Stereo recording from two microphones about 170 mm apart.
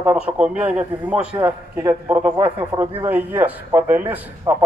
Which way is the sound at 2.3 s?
25° right (ahead or behind).